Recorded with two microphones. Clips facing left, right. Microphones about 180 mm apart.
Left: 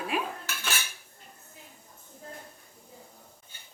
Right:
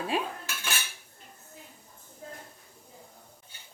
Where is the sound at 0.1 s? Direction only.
30° right (ahead or behind).